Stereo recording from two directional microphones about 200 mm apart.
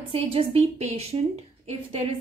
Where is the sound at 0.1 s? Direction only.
30° right (ahead or behind).